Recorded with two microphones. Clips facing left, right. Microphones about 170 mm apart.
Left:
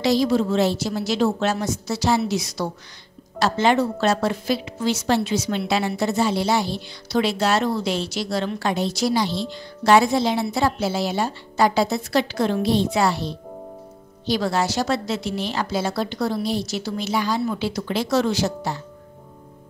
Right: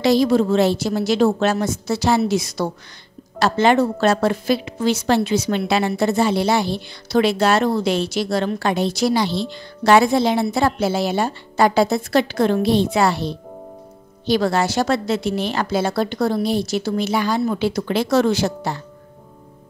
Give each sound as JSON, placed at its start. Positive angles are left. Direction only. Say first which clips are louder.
{"t": 0.0, "sound": "a woman's voice", "louder": "right 4 dB", "side_deg": -55}